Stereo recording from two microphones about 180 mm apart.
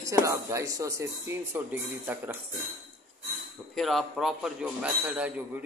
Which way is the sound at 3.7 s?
Centre (ahead or behind).